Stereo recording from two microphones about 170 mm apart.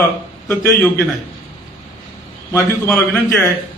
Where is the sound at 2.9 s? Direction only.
5° left (ahead or behind).